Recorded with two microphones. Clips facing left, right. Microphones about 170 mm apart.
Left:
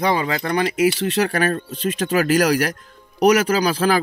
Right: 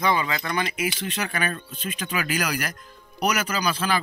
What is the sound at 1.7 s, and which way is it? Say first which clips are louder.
Speech: left 10 dB; 80° left.